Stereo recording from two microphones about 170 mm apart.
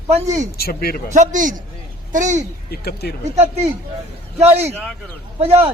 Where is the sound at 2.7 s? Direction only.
65° left (ahead or behind).